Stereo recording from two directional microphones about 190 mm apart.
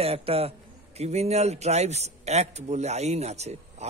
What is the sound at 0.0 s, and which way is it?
A man's voice, 30° right (ahead or behind).